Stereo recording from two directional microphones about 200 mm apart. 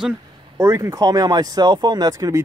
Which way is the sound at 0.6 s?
15° right (ahead or behind).